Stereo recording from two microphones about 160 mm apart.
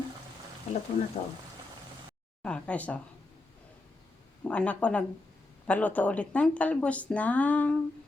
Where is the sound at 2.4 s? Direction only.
5° left (ahead or behind).